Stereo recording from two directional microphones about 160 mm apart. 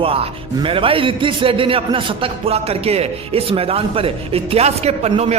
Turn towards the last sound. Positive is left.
turn(degrees=-40)  # may be behind; listen again after turning